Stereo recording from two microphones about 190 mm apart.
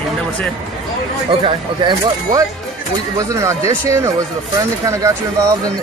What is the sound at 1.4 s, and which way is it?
Speech, 25° right (ahead or behind).